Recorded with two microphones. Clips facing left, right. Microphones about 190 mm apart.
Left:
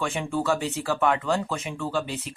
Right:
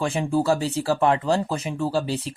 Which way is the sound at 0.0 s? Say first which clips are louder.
Right 5 dB; 35° right (ahead or behind).